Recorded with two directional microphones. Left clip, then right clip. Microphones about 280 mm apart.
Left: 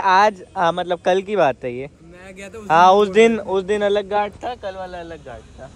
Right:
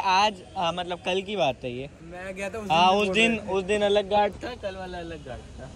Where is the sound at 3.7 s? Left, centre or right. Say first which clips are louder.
Left 2 dB; left.